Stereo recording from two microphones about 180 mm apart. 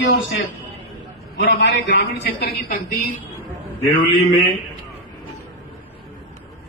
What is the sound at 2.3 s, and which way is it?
Speech, 60° left (ahead or behind).